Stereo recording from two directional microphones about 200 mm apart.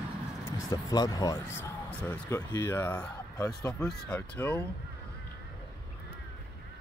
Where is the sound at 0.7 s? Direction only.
20° left (ahead or behind).